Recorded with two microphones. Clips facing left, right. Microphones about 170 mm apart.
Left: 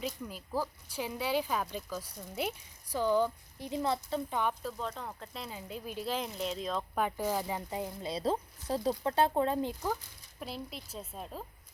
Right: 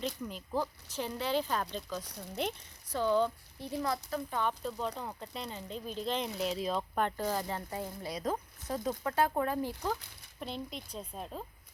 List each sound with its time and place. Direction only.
0.3 s speech: 5° left (ahead or behind)
3.8 s speech: 25° left (ahead or behind)
4.6 s speech: centre (ahead or behind); by 9.7 s 20° left (ahead or behind)
10.4 s a woman's voice: 5° left (ahead or behind)